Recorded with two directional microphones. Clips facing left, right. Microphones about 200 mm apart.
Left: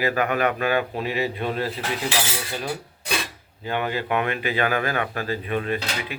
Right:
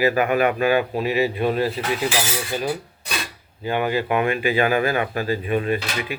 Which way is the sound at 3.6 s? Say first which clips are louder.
Right 4 dB; 10° right (ahead or behind).